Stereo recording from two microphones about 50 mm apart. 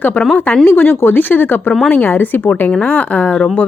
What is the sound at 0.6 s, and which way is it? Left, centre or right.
A woman's voice, left.